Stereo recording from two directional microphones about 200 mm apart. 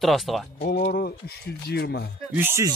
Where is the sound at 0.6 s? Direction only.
50° left (ahead or behind).